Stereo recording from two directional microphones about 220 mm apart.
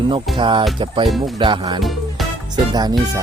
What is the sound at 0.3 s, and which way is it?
Speech, 20° right (ahead or behind).